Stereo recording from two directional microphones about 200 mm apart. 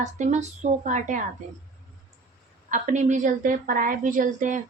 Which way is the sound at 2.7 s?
40° right (ahead or behind).